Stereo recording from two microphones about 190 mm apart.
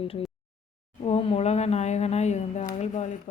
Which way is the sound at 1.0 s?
35° left (ahead or behind).